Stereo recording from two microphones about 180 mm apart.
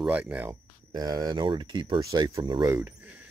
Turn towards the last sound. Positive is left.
turn(degrees=-5)  # may be behind; listen again after turning